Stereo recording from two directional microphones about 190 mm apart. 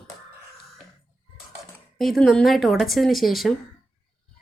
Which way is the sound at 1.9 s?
Centre (ahead or behind).